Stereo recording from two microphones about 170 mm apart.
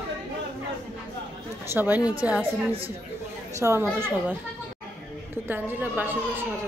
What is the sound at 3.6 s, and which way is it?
Speech, 15° right (ahead or behind).